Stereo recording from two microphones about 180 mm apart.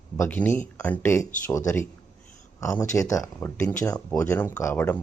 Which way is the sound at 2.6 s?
15° left (ahead or behind).